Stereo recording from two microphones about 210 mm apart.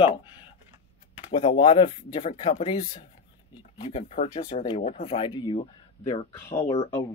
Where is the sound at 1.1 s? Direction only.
25° left (ahead or behind).